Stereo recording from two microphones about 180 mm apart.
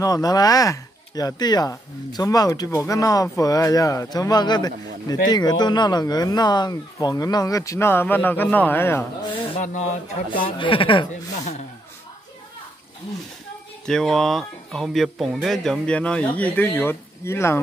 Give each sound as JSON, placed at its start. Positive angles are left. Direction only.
{"t": 0.0, "sound": "speech", "side_deg": 20}
{"t": 9.6, "sound": "speech", "side_deg": 40}
{"t": 10.6, "sound": "speech", "side_deg": 30}
{"t": 13.8, "sound": "speech", "side_deg": 0}